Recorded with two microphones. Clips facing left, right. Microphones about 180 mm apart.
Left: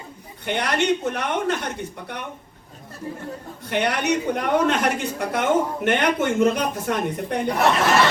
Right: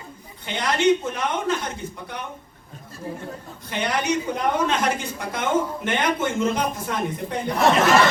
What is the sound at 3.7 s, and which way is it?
A woman's voice, 65° left (ahead or behind).